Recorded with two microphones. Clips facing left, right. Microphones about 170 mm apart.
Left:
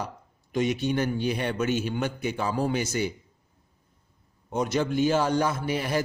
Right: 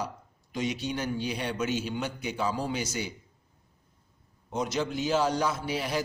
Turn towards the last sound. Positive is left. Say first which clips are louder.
# left 3 dB
turn(degrees=55)  # may be behind; listen again after turning